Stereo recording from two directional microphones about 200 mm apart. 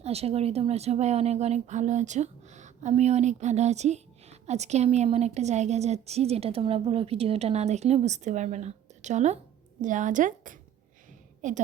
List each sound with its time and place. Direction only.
0.0 s speech: 30° right (ahead or behind)